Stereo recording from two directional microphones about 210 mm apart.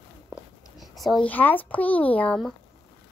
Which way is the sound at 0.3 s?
Centre (ahead or behind).